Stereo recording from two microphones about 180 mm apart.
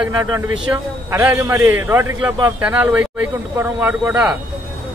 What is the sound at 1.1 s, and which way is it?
A man's voice, 15° right (ahead or behind).